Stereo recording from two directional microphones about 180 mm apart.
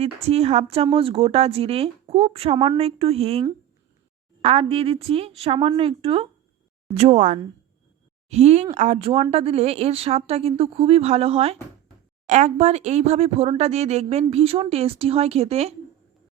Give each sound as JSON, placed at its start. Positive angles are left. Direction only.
{"t": 0.0, "sound": "speech", "side_deg": -35}
{"t": 4.4, "sound": "speech", "side_deg": -30}